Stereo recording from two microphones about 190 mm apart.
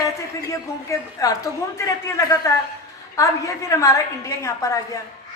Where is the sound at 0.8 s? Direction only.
20° left (ahead or behind).